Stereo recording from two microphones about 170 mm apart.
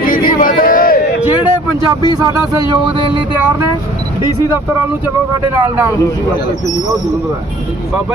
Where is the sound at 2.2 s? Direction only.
25° right (ahead or behind).